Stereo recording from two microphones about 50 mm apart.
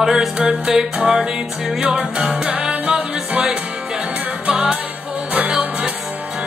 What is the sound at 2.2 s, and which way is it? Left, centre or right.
Music, centre.